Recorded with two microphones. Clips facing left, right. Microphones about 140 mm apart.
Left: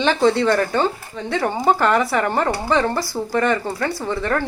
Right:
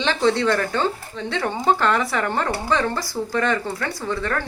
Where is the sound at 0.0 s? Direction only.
10° left (ahead or behind).